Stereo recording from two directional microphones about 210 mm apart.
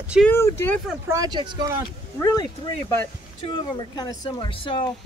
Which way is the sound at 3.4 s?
25° left (ahead or behind).